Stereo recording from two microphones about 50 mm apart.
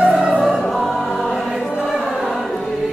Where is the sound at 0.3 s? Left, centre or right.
Centre.